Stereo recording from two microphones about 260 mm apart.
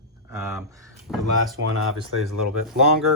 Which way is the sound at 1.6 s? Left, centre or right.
Right.